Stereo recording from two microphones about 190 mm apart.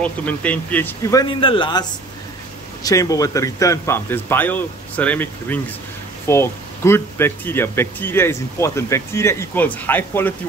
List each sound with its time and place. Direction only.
0.0 s speech: 10° left (ahead or behind)
1.2 s a man's voice: 25° left (ahead or behind); by 10.3 s 10° left (ahead or behind)